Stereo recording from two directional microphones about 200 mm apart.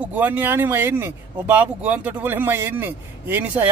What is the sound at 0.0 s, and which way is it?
Speech, 10° right (ahead or behind).